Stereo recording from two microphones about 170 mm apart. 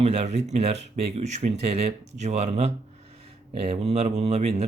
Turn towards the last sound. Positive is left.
turn(degrees=-40)  # may be behind; listen again after turning